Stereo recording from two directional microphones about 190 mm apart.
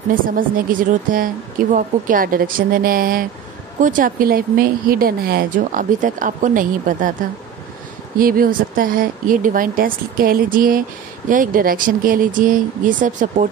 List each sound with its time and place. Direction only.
0.1 s speech: 45° right (ahead or behind)
8.2 s speech: 50° right (ahead or behind)